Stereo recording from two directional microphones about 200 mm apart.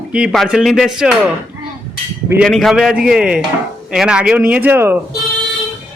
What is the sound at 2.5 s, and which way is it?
A man's voice, centre (ahead or behind).